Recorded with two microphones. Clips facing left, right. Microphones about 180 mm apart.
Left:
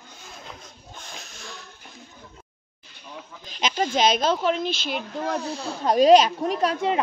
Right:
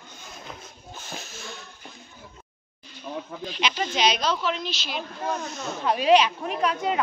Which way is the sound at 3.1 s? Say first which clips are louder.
Right 7 dB; 65° right (ahead or behind).